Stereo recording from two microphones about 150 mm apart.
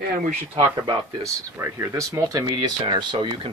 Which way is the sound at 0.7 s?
25° right (ahead or behind).